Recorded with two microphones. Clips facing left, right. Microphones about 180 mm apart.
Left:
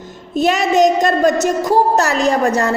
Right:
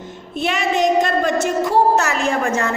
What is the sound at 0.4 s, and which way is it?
A woman's voice, 40° left (ahead or behind).